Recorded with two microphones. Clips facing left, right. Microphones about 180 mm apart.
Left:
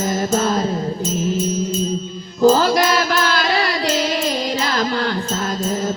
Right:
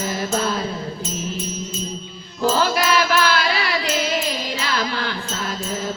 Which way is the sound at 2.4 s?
40° left (ahead or behind).